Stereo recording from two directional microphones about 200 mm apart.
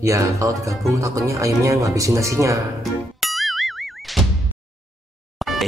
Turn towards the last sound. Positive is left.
turn(degrees=0)  # may be behind; listen again after turning